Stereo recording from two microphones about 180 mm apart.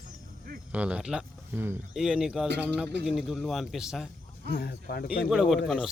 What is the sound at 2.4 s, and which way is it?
Speech, 70° right (ahead or behind).